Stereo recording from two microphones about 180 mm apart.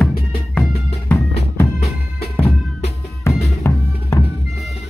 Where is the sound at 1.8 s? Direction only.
35° left (ahead or behind).